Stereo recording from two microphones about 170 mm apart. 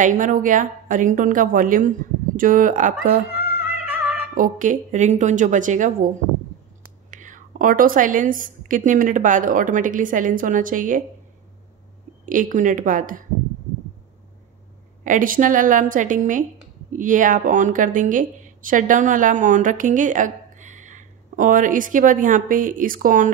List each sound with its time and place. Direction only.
0.0 s speech: 50° right (ahead or behind)
3.6 s music: 10° right (ahead or behind)
4.4 s speech: 50° right (ahead or behind)
12.3 s speech: 50° right (ahead or behind)
15.0 s speech: 50° right (ahead or behind)